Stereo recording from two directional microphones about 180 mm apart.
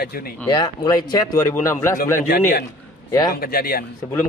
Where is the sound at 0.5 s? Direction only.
25° left (ahead or behind).